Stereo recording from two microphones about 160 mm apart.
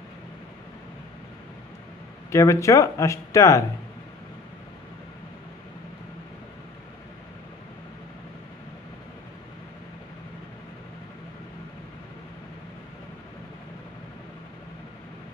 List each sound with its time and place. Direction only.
2.3 s speech: 20° left (ahead or behind)